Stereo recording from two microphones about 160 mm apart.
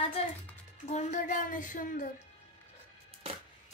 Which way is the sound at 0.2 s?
40° left (ahead or behind).